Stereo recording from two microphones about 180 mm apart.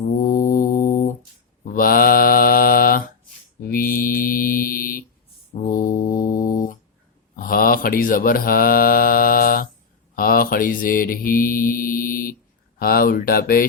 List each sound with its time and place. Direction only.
0.1 s mantra: 50° left (ahead or behind)
12.8 s speech: 55° left (ahead or behind)